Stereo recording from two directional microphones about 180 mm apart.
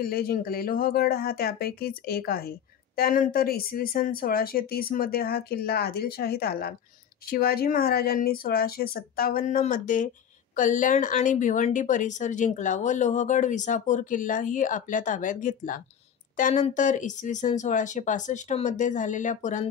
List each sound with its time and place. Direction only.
0.0 s a woman's voice: 55° left (ahead or behind)